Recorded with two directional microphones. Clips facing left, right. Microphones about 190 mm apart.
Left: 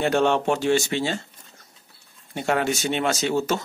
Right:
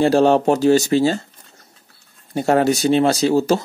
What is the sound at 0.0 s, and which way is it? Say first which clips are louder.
Speech: right 7 dB; 35° right (ahead or behind).